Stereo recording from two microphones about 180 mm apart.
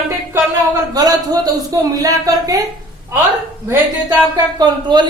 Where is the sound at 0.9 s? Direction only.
20° right (ahead or behind).